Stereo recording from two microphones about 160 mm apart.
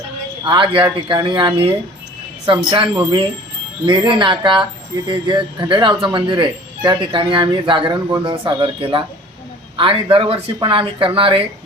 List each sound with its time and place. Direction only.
0.4 s speech: 30° right (ahead or behind)